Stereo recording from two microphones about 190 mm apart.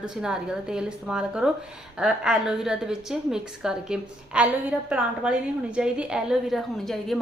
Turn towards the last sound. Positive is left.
turn(degrees=0)  # may be behind; listen again after turning